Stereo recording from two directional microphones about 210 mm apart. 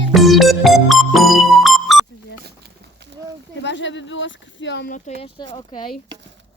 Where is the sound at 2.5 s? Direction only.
55° right (ahead or behind).